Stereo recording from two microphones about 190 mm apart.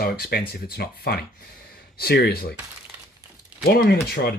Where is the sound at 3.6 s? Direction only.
50° left (ahead or behind).